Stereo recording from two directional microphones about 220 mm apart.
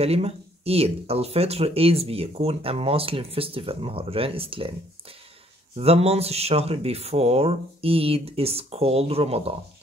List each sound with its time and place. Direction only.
0.0 s speech: 25° right (ahead or behind)
5.8 s speech: 25° right (ahead or behind)